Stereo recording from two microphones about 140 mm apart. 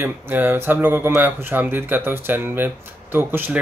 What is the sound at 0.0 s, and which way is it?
Speech, 15° right (ahead or behind).